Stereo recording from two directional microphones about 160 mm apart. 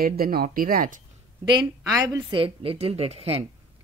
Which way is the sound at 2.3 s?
35° right (ahead or behind).